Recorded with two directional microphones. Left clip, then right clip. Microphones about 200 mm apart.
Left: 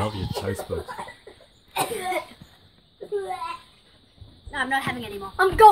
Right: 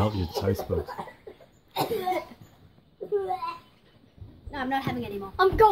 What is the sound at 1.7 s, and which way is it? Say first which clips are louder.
Cough: left 1 dB; 5° right (ahead or behind).